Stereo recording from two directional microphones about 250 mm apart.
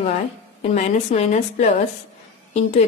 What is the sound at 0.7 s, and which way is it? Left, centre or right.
Speech, left.